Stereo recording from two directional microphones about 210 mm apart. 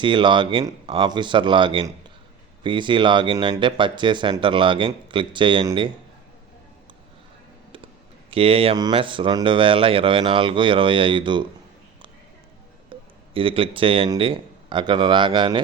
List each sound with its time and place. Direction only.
0.0 s speech: 20° right (ahead or behind)
8.3 s speech: 25° right (ahead or behind)
12.9 s speech: 25° right (ahead or behind)